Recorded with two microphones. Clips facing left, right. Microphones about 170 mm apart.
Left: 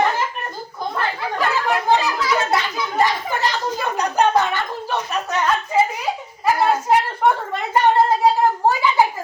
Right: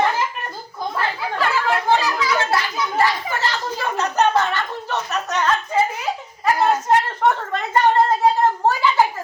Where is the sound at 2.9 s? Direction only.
20° left (ahead or behind).